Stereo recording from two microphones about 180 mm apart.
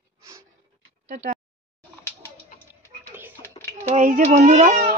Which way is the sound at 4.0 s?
45° right (ahead or behind).